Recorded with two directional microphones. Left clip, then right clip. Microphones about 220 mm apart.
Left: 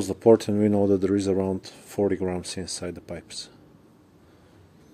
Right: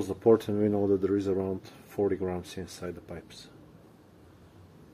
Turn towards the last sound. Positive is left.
turn(degrees=45)  # may be behind; listen again after turning